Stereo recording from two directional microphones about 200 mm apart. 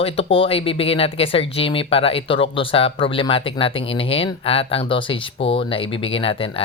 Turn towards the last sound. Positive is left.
turn(degrees=25)  # may be behind; listen again after turning